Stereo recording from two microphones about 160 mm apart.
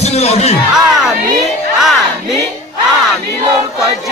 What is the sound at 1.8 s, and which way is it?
Battle cry, centre (ahead or behind).